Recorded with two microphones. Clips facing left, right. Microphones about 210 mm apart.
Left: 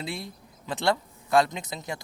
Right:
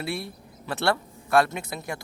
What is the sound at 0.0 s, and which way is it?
Speech, 20° left (ahead or behind).